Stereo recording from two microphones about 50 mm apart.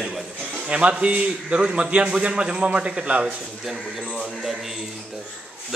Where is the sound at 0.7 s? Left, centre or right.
Right.